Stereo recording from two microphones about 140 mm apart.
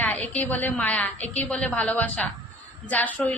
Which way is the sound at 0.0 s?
10° left (ahead or behind).